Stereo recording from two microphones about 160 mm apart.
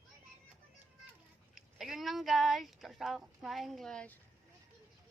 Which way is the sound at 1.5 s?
Centre (ahead or behind).